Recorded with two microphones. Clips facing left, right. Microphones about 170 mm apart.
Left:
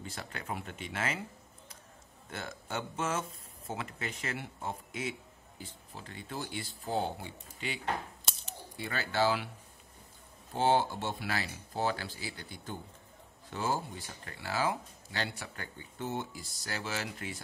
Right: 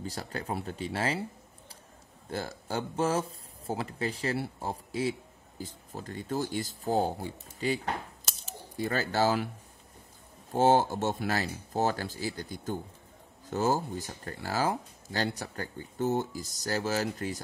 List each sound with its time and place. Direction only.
0.0 s speech: 35° right (ahead or behind)
2.2 s speech: 35° right (ahead or behind)
10.5 s speech: 45° right (ahead or behind)